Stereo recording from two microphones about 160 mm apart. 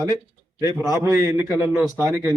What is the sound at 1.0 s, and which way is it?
A man's voice, 15° right (ahead or behind).